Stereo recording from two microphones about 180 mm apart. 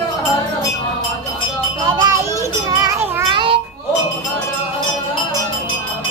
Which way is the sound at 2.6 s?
20° right (ahead or behind).